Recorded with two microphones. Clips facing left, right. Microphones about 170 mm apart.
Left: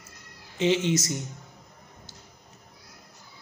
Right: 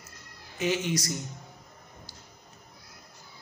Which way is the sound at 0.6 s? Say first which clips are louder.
Left 5 dB; 25° left (ahead or behind).